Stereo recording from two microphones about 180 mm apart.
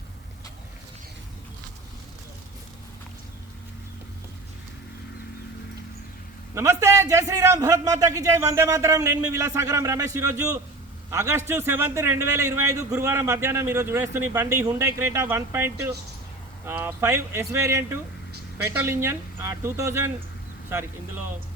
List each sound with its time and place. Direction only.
6.5 s a man's voice: 15° right (ahead or behind)